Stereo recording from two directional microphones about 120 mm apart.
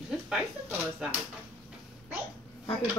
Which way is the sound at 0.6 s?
15° right (ahead or behind).